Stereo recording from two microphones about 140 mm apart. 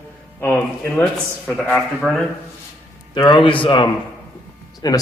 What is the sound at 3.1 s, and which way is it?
Speech, 35° left (ahead or behind).